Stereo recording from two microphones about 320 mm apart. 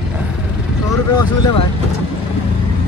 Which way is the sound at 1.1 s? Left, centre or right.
Left.